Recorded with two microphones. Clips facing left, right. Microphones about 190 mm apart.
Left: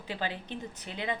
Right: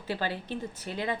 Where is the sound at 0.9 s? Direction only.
50° right (ahead or behind).